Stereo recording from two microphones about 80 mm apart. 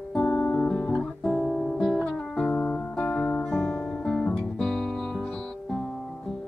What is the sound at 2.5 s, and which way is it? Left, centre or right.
Music, centre.